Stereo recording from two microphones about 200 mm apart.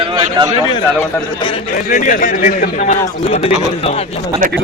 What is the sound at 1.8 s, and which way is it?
A man's voice, 40° left (ahead or behind).